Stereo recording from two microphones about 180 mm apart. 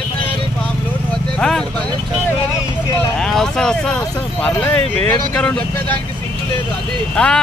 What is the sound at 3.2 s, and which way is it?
Speech, 5° left (ahead or behind).